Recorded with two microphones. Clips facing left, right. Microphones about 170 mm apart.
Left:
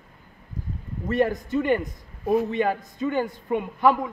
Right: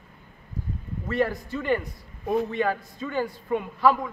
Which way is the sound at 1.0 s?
20° left (ahead or behind).